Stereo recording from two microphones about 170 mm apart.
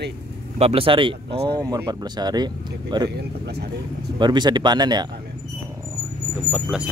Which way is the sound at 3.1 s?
75° right (ahead or behind).